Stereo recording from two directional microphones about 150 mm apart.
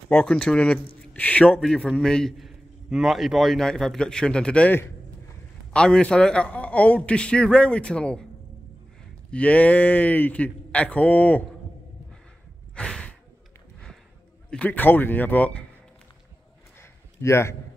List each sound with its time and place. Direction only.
0.1 s a man's voice: 5° left (ahead or behind)
9.3 s a man's voice: 10° left (ahead or behind)
12.7 s gasp: 5° left (ahead or behind)
14.5 s a man's voice: 10° left (ahead or behind)
17.2 s a man's voice: 20° left (ahead or behind)